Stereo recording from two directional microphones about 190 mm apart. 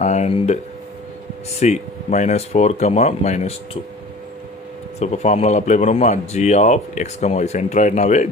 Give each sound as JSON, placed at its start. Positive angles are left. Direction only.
{"t": 0.0, "sound": "speech", "side_deg": 35}
{"t": 1.6, "sound": "speech", "side_deg": 40}
{"t": 4.9, "sound": "speech", "side_deg": 35}